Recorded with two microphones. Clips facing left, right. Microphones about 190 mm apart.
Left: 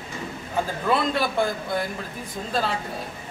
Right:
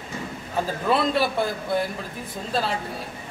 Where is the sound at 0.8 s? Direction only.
5° right (ahead or behind).